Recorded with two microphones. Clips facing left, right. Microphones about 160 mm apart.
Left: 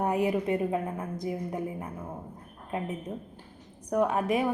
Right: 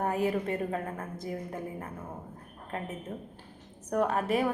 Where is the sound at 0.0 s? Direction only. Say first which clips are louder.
Left 2 dB; 15° left (ahead or behind).